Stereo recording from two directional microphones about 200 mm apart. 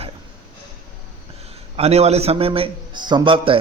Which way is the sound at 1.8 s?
30° right (ahead or behind).